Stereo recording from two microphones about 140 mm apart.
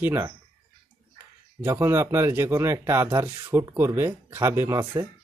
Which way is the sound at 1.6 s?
20° right (ahead or behind).